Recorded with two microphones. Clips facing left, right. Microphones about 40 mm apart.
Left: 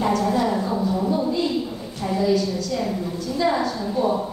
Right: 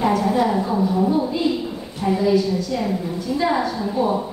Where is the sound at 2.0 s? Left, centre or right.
Centre.